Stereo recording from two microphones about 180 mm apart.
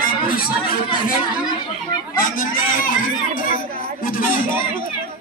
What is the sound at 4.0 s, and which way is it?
Speech, 50° left (ahead or behind).